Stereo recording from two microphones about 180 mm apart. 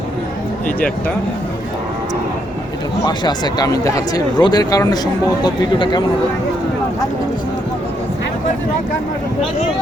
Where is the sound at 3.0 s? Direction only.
25° left (ahead or behind).